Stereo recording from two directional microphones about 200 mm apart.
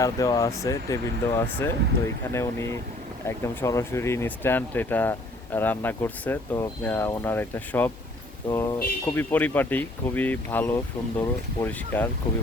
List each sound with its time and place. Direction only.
0.0 s speech: 15° left (ahead or behind)